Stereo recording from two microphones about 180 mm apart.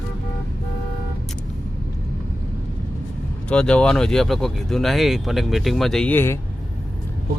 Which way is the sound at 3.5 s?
5° left (ahead or behind).